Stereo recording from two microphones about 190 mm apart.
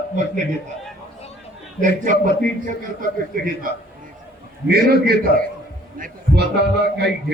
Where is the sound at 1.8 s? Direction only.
45° right (ahead or behind).